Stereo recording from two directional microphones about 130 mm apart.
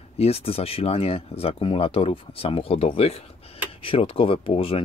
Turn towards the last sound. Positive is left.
turn(degrees=45)  # may be behind; listen again after turning